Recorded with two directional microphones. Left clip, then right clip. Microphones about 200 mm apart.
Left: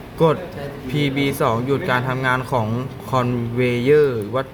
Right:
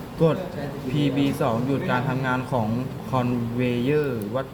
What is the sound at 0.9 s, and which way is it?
Speech, 60° left (ahead or behind).